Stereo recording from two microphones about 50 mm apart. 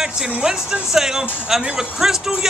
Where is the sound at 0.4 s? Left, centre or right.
Centre.